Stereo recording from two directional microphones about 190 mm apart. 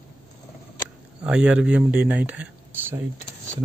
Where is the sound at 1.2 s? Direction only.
5° right (ahead or behind).